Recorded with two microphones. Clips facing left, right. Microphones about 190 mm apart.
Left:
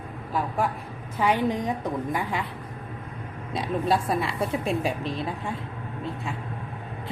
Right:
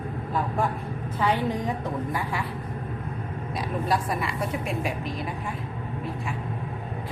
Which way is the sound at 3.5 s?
30° left (ahead or behind).